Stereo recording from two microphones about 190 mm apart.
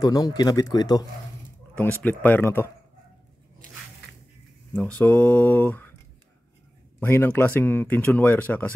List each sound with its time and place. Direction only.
0.0 s speech: 20° left (ahead or behind)
1.8 s speech: 10° left (ahead or behind)
4.7 s speech: 10° left (ahead or behind)
7.0 s speech: 10° left (ahead or behind)